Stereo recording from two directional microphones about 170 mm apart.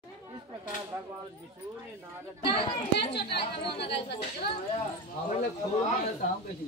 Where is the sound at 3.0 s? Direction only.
75° left (ahead or behind).